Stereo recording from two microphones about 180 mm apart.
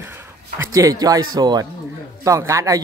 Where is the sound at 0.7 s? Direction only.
20° right (ahead or behind).